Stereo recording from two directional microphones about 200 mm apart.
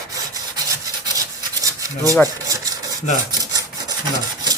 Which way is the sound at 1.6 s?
15° right (ahead or behind).